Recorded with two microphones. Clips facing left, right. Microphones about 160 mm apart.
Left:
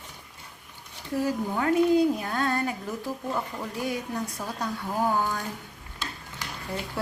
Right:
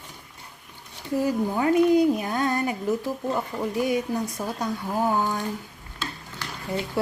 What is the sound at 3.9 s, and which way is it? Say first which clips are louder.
A woman's voice: right 5 dB; 10° right (ahead or behind).